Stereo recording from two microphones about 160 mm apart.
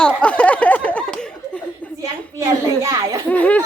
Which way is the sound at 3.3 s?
10° left (ahead or behind).